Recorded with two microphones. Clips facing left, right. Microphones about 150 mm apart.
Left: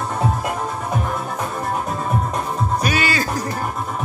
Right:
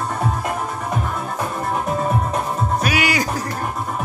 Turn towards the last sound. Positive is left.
turn(degrees=-15)  # may be behind; listen again after turning